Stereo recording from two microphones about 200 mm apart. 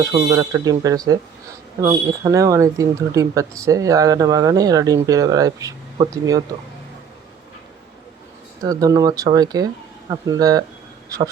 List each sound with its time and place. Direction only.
0.1 s speech: 15° right (ahead or behind)
8.6 s speech: 20° right (ahead or behind)